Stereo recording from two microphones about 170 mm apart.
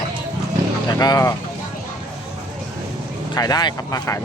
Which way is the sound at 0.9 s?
20° left (ahead or behind).